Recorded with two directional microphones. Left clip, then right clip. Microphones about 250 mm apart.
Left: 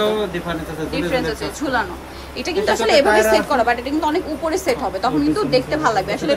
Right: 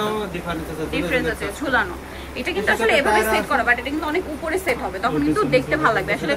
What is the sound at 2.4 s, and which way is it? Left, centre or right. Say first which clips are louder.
A woman's voice: left 1 dB; left.